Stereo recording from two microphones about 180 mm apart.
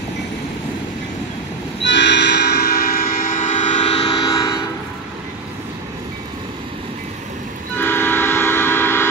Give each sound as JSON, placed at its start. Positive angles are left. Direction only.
{"t": 1.8, "sound": "train", "side_deg": 80}
{"t": 7.7, "sound": "train", "side_deg": 10}